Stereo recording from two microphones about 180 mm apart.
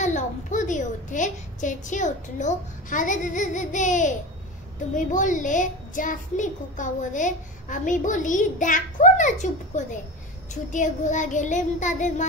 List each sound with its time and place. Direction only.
0.0 s a child's voice: 45° left (ahead or behind)